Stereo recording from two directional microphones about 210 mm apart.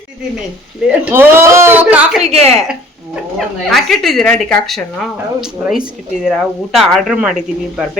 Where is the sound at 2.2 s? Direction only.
30° right (ahead or behind).